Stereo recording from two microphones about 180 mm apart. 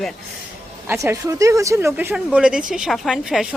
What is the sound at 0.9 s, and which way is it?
Speech, 15° right (ahead or behind).